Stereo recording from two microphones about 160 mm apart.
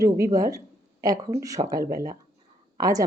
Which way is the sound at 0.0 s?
20° right (ahead or behind).